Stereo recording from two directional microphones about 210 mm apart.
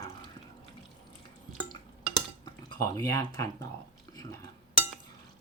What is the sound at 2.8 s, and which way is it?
Speech, 15° left (ahead or behind).